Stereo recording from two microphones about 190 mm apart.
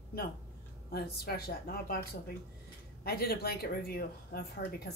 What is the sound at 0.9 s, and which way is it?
Speech, 55° left (ahead or behind).